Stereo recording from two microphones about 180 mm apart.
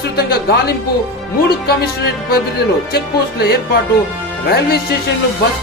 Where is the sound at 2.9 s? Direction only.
60° left (ahead or behind).